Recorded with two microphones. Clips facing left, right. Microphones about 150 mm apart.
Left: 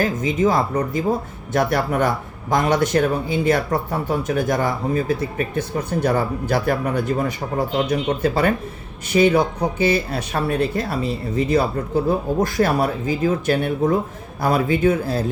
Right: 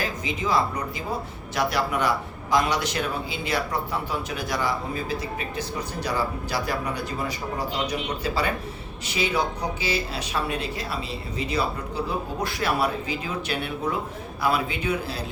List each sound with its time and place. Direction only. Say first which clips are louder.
0.0 s speech: left 10 dB; 45° left (ahead or behind)